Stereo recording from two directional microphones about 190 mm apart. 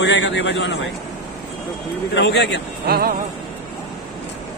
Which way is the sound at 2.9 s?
50° right (ahead or behind).